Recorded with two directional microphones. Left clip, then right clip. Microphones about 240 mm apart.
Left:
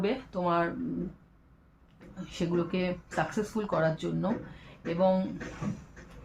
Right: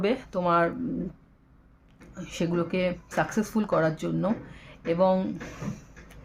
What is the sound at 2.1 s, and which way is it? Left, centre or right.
Speech, right.